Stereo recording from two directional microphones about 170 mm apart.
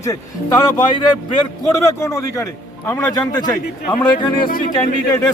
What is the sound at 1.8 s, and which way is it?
A man's voice, 20° left (ahead or behind).